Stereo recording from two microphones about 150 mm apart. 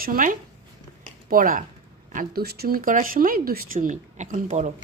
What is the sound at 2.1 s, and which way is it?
Speech, 90° right.